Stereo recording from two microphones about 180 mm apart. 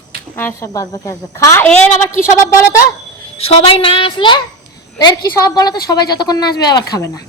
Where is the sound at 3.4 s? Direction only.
35° left (ahead or behind).